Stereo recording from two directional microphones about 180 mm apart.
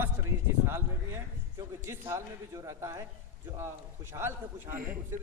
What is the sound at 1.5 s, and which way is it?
A man's voice, 15° right (ahead or behind).